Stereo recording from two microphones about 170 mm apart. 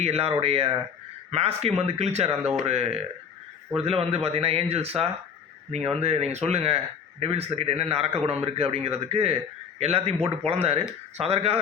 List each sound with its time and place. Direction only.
0.0 s speech: 35° right (ahead or behind)